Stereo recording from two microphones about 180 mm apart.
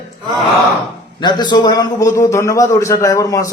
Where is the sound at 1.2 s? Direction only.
25° left (ahead or behind).